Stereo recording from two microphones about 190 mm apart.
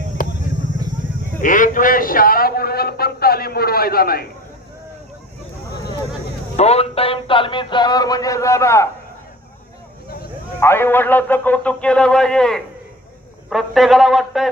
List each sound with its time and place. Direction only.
0.2 s basketball bounce: 45° left (ahead or behind)
1.4 s a man's voice: 45° left (ahead or behind)
6.6 s speech: 35° left (ahead or behind); by 8.9 s 15° left (ahead or behind)
10.6 s a man's voice: 10° left (ahead or behind)